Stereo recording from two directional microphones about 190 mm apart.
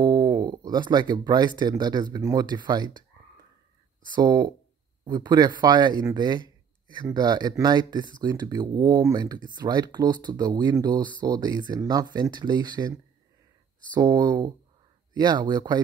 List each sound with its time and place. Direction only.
0.0 s speech: 25° right (ahead or behind)
4.1 s speech: 20° right (ahead or behind)
13.9 s speech: 20° right (ahead or behind)